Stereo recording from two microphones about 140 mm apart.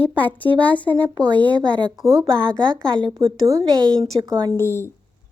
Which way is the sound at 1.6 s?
35° right (ahead or behind).